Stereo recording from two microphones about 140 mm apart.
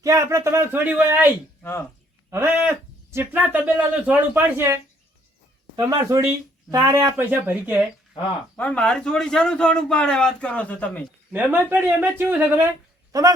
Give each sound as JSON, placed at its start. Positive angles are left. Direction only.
{"t": 0.0, "sound": "speech", "side_deg": -20}
{"t": 2.3, "sound": "speech", "side_deg": -15}
{"t": 5.7, "sound": "speech", "side_deg": -25}
{"t": 8.5, "sound": "a man's voice", "side_deg": 10}
{"t": 11.3, "sound": "speech", "side_deg": -10}